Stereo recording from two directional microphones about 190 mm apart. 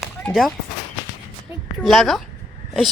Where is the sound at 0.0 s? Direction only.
Centre (ahead or behind).